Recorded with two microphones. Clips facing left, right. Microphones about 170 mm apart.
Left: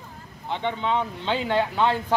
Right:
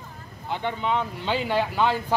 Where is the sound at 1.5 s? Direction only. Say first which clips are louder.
Left 1 dB; 5° right (ahead or behind).